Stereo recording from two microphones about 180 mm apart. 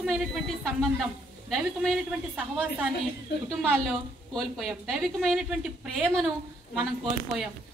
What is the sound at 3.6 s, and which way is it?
A woman's voice, 5° left (ahead or behind).